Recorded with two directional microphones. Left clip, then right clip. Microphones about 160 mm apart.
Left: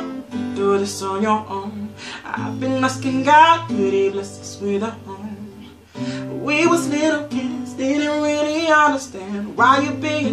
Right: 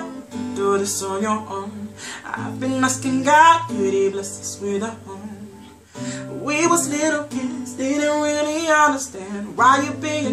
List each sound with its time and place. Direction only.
0.6 s music: 10° right (ahead or behind)
6.0 s music: 5° right (ahead or behind)